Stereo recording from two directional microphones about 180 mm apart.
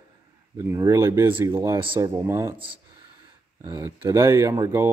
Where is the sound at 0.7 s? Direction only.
15° right (ahead or behind).